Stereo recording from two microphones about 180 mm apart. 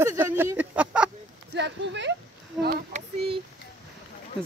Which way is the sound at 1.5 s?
75° right (ahead or behind).